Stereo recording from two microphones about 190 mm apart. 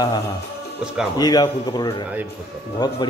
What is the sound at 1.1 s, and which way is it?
A man's voice, 20° left (ahead or behind).